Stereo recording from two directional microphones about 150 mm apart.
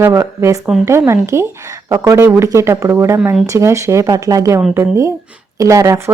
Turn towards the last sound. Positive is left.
turn(degrees=-20)  # may be behind; listen again after turning